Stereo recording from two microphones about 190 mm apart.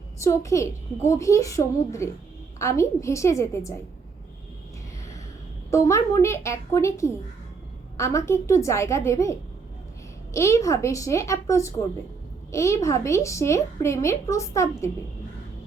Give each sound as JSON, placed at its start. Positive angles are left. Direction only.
{"t": 0.2, "sound": "a woman's voice", "side_deg": 15}
{"t": 5.7, "sound": "a woman's voice", "side_deg": 15}